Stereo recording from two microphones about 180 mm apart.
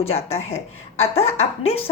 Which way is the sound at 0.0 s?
35° left (ahead or behind).